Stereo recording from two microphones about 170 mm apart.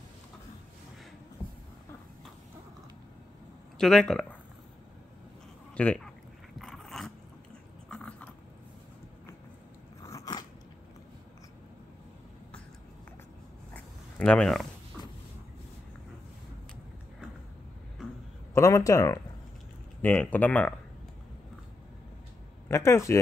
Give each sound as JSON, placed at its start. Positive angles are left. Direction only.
{"t": 3.7, "sound": "speech", "side_deg": 5}
{"t": 5.8, "sound": "speech", "side_deg": 5}
{"t": 6.6, "sound": "biting", "side_deg": 0}
{"t": 7.9, "sound": "a sound", "side_deg": 10}
{"t": 10.0, "sound": "biting", "side_deg": 20}
{"t": 13.7, "sound": "dog", "side_deg": 10}
{"t": 18.0, "sound": "a sound", "side_deg": -5}
{"t": 18.5, "sound": "speech", "side_deg": 20}
{"t": 22.7, "sound": "speech", "side_deg": 15}